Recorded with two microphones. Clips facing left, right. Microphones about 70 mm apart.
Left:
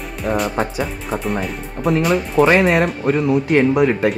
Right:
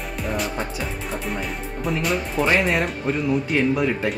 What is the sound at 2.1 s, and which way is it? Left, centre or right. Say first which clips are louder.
Speech: left 7 dB; left.